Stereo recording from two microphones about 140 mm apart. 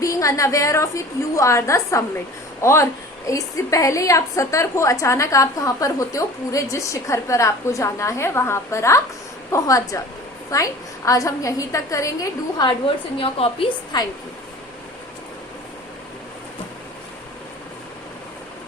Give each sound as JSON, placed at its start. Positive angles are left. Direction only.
{"t": 0.0, "sound": "a woman's voice", "side_deg": 20}
{"t": 13.1, "sound": "a woman's voice", "side_deg": 40}